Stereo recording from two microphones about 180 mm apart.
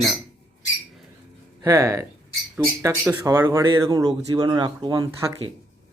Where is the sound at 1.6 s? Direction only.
15° right (ahead or behind).